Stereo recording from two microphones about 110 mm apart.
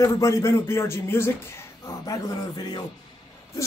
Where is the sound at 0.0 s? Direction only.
30° left (ahead or behind).